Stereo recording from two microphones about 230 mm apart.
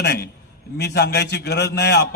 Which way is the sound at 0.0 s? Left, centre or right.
Left.